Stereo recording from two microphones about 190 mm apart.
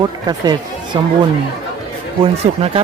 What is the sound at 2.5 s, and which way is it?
Speech, 35° right (ahead or behind).